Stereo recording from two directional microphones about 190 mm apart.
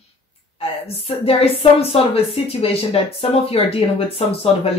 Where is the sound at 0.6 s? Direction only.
30° left (ahead or behind).